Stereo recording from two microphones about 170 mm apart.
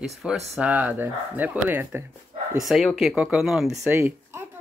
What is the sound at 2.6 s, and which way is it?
Speech, centre (ahead or behind).